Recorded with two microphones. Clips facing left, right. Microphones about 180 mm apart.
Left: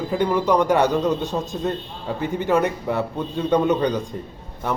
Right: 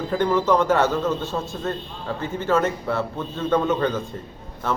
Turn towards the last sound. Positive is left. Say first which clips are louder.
# even
turn(degrees=15)  # may be behind; listen again after turning